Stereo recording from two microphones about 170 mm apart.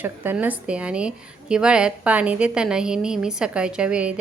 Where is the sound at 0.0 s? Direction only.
10° right (ahead or behind).